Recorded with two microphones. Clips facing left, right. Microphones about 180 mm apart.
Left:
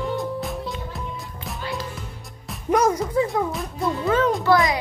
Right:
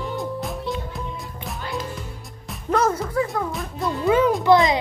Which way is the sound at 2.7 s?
15° left (ahead or behind).